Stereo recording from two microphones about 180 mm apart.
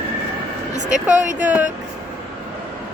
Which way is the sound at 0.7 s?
40° right (ahead or behind).